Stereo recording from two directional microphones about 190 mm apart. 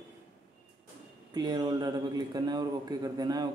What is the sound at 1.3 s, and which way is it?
Speech, 20° right (ahead or behind).